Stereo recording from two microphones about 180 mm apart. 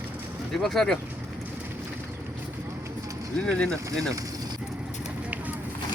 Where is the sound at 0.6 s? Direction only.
Centre (ahead or behind).